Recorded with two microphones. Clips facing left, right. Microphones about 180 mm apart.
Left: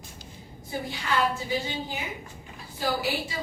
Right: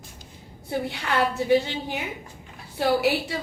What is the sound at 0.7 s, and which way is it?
A woman's voice, 65° right (ahead or behind).